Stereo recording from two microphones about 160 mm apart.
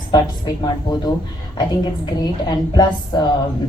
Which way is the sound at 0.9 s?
25° left (ahead or behind).